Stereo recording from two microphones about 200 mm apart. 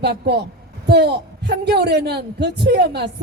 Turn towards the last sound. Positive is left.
turn(degrees=-55)  # may be behind; listen again after turning